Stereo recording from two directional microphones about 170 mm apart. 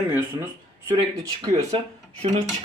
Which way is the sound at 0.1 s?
10° right (ahead or behind).